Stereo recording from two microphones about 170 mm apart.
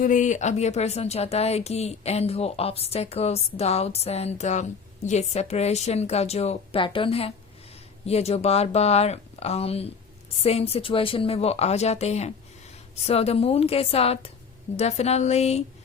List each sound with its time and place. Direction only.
0.0 s speech: 50° left (ahead or behind)